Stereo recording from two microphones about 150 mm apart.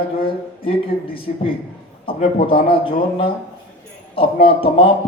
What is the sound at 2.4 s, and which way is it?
Speech, 35° left (ahead or behind).